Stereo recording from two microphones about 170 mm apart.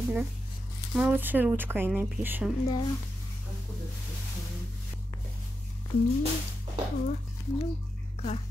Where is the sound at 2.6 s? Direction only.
25° left (ahead or behind).